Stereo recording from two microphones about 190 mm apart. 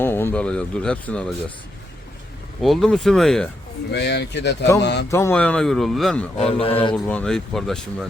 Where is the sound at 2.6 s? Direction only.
Centre (ahead or behind).